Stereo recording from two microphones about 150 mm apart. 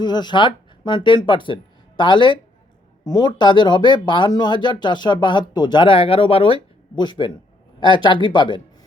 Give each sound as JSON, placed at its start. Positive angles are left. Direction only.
{"t": 0.0, "sound": "speech", "side_deg": 30}